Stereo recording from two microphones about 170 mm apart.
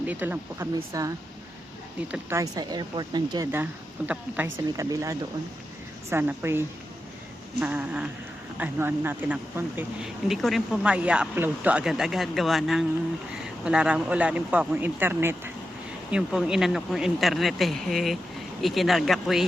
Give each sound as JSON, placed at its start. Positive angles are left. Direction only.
{"t": 0.0, "sound": "speech", "side_deg": -10}
{"t": 2.4, "sound": "a woman's voice", "side_deg": -25}
{"t": 3.5, "sound": "a woman's voice", "side_deg": -10}